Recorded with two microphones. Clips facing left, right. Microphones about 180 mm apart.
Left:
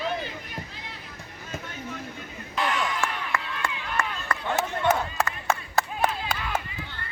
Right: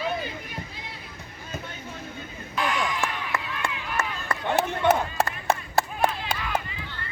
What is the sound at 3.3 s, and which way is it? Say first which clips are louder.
Crowd: even; 20° right (ahead or behind).